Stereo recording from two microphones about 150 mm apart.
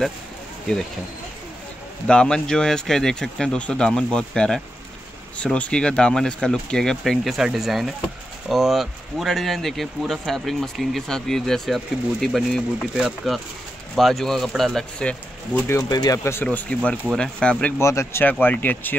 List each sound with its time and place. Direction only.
2.0 s speech: 5° left (ahead or behind)
15.7 s speech: 25° left (ahead or behind)
16.4 s speech: 10° left (ahead or behind)